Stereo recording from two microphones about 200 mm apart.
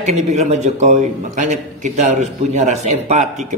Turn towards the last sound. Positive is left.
turn(degrees=-35)  # may be behind; listen again after turning